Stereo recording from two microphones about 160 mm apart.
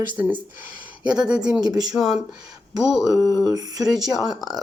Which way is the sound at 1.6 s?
25° right (ahead or behind).